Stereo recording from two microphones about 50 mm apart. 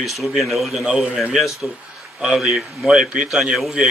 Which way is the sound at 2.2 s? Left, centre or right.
Centre.